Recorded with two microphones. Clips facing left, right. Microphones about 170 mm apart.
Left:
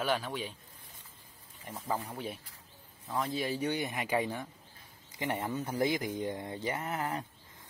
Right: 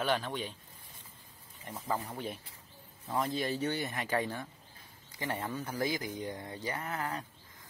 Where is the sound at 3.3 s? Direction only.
10° left (ahead or behind).